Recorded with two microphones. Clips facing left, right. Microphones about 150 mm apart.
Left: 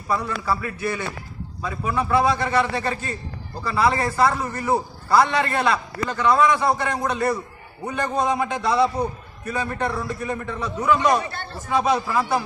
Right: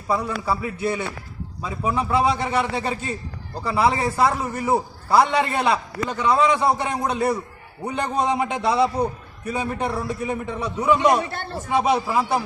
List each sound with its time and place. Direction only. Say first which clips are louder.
0.1 s a man's voice: right 1 dB; 15° right (ahead or behind)